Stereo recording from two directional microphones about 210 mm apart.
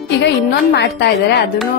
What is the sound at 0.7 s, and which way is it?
Speech, 50° left (ahead or behind).